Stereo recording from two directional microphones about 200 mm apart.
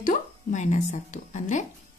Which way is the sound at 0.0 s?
40° left (ahead or behind).